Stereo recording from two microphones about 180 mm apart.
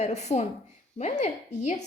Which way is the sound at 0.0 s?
40° left (ahead or behind).